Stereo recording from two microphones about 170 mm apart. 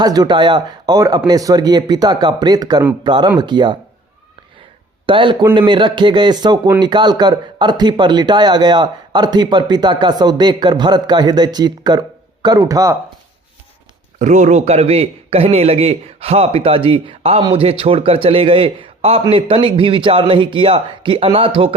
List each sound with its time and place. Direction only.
0.0 s a man's voice: 25° right (ahead or behind)
5.0 s a man's voice: 30° right (ahead or behind)
14.2 s a man's voice: 45° right (ahead or behind)